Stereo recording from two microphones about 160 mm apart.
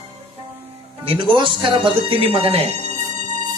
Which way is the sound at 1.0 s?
30° right (ahead or behind).